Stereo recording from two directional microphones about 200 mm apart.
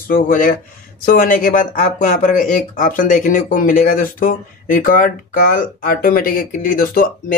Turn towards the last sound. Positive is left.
turn(degrees=45)  # may be behind; listen again after turning